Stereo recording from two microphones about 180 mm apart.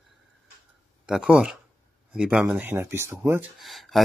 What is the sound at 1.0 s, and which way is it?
Speech, 5° right (ahead or behind).